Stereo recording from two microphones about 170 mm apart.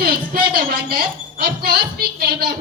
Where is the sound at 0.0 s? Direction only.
60° right (ahead or behind).